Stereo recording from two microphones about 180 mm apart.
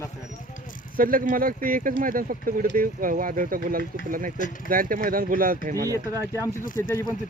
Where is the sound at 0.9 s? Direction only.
50° right (ahead or behind).